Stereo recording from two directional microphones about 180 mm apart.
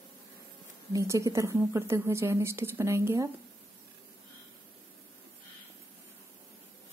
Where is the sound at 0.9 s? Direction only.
15° right (ahead or behind).